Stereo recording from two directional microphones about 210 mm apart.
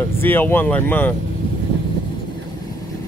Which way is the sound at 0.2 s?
10° left (ahead or behind).